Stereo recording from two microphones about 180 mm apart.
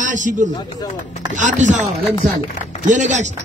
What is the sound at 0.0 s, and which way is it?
Speech, 45° right (ahead or behind).